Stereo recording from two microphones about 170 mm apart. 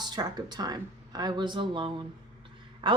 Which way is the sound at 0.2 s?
25° right (ahead or behind).